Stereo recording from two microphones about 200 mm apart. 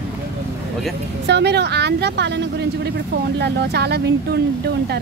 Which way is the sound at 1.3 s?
55° right (ahead or behind).